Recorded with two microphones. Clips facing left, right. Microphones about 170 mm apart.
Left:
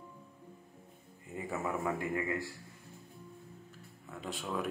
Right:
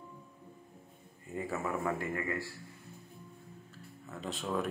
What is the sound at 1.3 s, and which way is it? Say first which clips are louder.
A man's voice: right 1 dB; 15° left (ahead or behind).